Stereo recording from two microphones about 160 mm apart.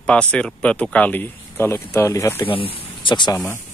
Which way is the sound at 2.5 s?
35° left (ahead or behind).